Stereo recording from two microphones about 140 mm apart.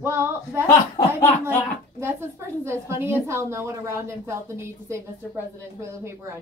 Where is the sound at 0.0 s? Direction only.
20° right (ahead or behind).